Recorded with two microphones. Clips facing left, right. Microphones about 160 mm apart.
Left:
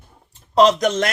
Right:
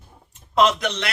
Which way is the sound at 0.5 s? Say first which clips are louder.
Left 5 dB; 40° left (ahead or behind).